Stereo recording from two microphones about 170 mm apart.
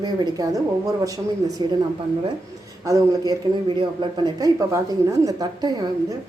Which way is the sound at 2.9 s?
25° right (ahead or behind).